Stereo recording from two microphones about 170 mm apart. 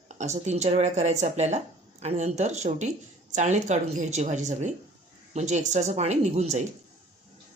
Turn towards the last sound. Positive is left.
turn(degrees=-40)  # may be behind; listen again after turning